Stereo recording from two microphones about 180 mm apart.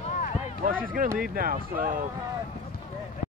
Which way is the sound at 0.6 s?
50° right (ahead or behind).